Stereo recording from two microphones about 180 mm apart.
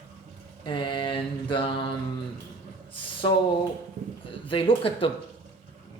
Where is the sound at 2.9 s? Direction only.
30° left (ahead or behind).